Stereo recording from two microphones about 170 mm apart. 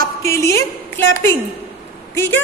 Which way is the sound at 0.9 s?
15° left (ahead or behind).